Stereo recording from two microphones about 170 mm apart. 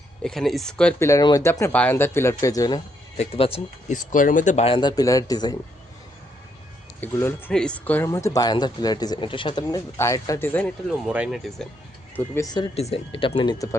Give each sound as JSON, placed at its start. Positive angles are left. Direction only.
{"t": 0.2, "sound": "speech", "side_deg": 0}
{"t": 1.0, "sound": "speech", "side_deg": 20}
{"t": 3.2, "sound": "a man's voice", "side_deg": 35}
{"t": 3.9, "sound": "a man's voice", "side_deg": 50}
{"t": 7.0, "sound": "speech", "side_deg": 10}
{"t": 11.1, "sound": "speech", "side_deg": -5}
{"t": 12.1, "sound": "speech", "side_deg": 15}
{"t": 12.5, "sound": "speech", "side_deg": 25}